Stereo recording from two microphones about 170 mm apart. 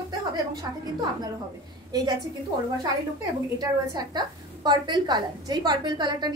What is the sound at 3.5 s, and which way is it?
A woman's voice, 25° right (ahead or behind).